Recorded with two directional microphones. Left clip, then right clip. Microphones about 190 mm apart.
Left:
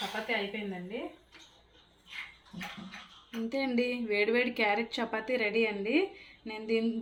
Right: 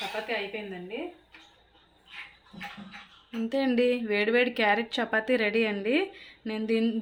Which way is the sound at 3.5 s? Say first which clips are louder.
Right 6 dB; 35° right (ahead or behind).